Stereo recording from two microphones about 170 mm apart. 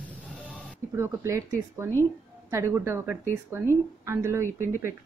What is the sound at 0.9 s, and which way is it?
Speech, 15° right (ahead or behind).